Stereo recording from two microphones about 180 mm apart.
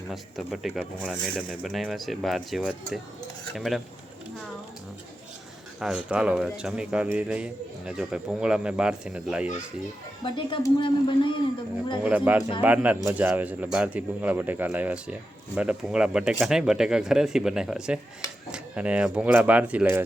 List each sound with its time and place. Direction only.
0.1 s speech: centre (ahead or behind)
5.8 s speech: 5° right (ahead or behind)
10.2 s speech: 25° left (ahead or behind)
12.0 s speech: 10° right (ahead or behind)